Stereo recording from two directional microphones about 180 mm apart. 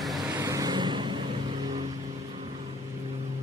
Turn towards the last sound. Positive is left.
turn(degrees=-25)  # may be behind; listen again after turning